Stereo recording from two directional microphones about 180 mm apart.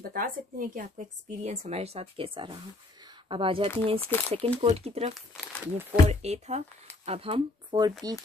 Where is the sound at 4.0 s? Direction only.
10° left (ahead or behind).